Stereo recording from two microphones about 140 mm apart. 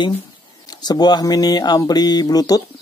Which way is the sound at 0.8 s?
30° left (ahead or behind).